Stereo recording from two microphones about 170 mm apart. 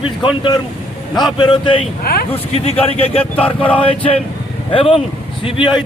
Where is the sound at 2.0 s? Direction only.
65° left (ahead or behind).